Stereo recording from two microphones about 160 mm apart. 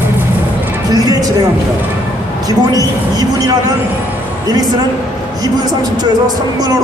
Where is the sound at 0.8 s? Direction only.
25° right (ahead or behind).